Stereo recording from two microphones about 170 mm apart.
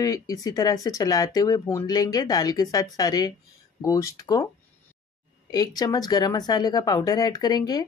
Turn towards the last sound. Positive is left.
turn(degrees=25)  # may be behind; listen again after turning